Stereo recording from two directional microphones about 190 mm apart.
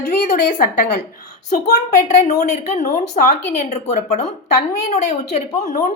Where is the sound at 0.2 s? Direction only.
40° left (ahead or behind).